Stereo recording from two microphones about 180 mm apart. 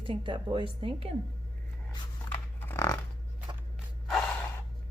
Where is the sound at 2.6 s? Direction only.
10° left (ahead or behind).